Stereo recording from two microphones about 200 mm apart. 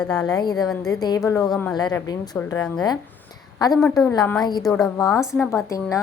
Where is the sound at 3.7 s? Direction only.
Centre (ahead or behind).